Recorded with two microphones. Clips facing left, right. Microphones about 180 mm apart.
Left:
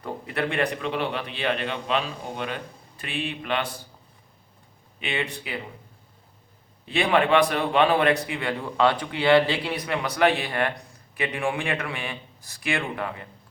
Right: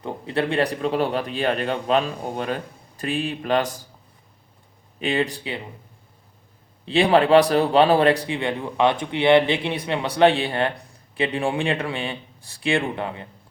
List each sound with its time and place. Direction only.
0.0 s a man's voice: 30° right (ahead or behind)
4.9 s a man's voice: 40° right (ahead or behind)
6.8 s a man's voice: 35° right (ahead or behind)